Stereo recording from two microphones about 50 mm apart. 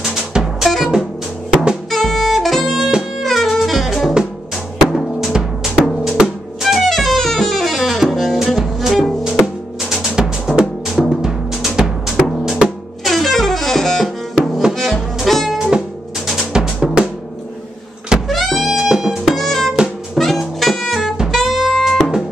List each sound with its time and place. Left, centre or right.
0.0 s music: centre
1.5 s drum kit: centre
1.9 s music: centre
2.8 s music: centre
3.2 s music: centre
6.6 s saxophone: centre
8.4 s music: centre
9.2 s music: centre
13.0 s music: centre
14.0 s music: centre
15.5 s music: centre
18.3 s music: centre
19.3 s music: centre